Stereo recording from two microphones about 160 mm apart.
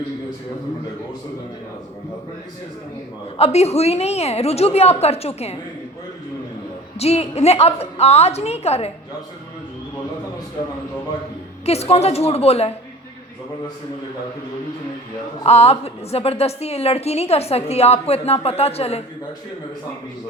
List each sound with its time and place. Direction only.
3.3 s a woman's voice: 40° left (ahead or behind)
7.0 s a woman's voice: 40° left (ahead or behind)
11.6 s a woman's voice: 40° left (ahead or behind)
15.4 s a woman's voice: 40° left (ahead or behind)